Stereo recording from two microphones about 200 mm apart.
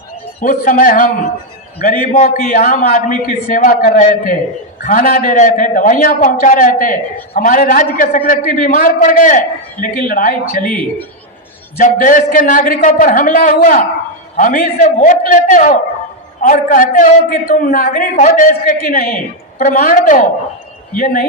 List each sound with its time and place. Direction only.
0.4 s a man's voice: 45° left (ahead or behind)
11.8 s a man's voice: 40° left (ahead or behind)